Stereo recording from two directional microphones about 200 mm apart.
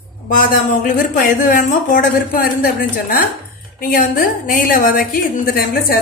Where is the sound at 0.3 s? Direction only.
45° left (ahead or behind).